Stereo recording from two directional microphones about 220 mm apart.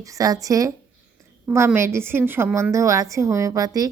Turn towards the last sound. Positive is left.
turn(degrees=-15)  # may be behind; listen again after turning